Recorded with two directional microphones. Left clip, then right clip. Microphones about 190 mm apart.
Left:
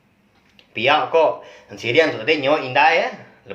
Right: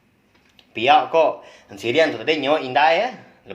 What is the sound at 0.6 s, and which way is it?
Speech, 35° right (ahead or behind).